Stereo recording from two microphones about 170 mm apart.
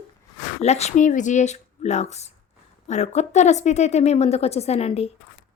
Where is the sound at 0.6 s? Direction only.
40° left (ahead or behind).